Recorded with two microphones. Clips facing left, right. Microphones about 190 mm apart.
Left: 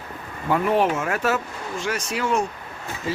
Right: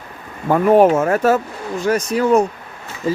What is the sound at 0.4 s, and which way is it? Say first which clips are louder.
Speech: right 8 dB; 45° right (ahead or behind).